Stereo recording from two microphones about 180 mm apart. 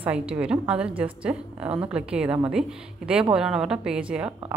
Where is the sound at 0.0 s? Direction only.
5° right (ahead or behind).